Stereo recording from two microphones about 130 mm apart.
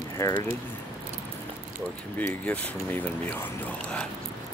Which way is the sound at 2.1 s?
10° left (ahead or behind).